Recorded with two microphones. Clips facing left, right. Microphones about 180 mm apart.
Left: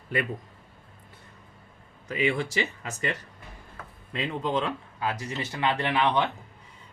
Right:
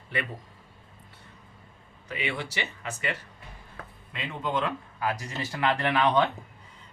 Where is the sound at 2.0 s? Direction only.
45° left (ahead or behind).